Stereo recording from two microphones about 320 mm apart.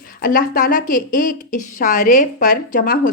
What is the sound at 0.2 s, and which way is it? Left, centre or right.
Speech, left.